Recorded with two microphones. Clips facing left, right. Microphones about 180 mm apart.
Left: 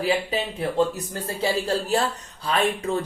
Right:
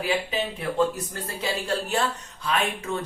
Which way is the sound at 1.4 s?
35° left (ahead or behind).